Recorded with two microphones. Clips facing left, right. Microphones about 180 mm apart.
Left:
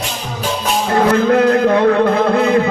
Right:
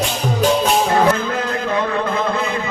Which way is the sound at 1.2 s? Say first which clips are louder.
Left 10 dB; 65° left (ahead or behind).